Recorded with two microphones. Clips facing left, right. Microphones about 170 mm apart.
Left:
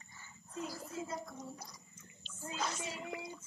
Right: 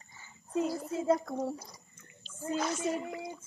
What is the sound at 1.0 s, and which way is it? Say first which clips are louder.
Speech: right 14 dB; 75° right (ahead or behind).